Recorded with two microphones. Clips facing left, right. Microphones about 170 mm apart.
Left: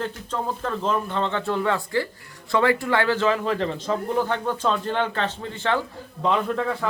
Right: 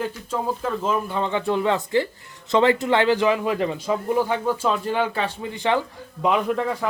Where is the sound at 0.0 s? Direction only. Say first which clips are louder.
Right 2 dB; 5° right (ahead or behind).